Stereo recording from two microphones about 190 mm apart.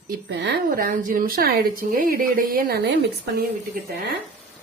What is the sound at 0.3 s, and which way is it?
Speech, 65° right (ahead or behind).